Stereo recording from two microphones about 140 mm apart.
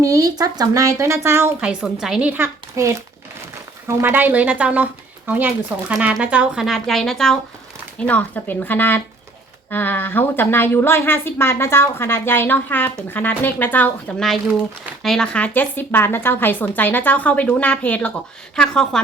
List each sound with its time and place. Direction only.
0.0 s speech: 25° right (ahead or behind)
1.6 s a woman's voice: 5° right (ahead or behind); by 13.9 s 15° left (ahead or behind)
14.2 s a woman's voice: centre (ahead or behind)